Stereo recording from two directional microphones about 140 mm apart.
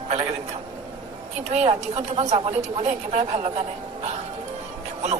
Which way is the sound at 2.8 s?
55° right (ahead or behind).